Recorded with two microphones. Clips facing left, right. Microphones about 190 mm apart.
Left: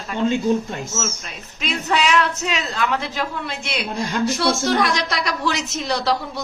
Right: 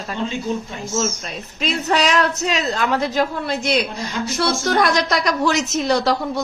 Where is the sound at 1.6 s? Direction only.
40° right (ahead or behind).